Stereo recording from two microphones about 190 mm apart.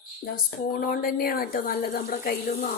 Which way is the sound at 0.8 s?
50° left (ahead or behind).